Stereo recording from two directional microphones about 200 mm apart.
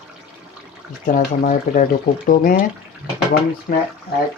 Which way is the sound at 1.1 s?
40° left (ahead or behind).